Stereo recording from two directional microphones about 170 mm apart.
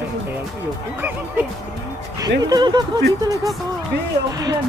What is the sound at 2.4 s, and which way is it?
Speech, 25° right (ahead or behind).